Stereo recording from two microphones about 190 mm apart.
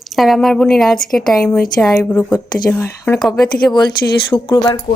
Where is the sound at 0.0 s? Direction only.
Centre (ahead or behind).